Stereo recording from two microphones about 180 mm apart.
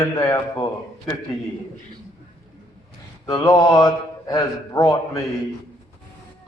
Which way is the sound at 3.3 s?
20° left (ahead or behind).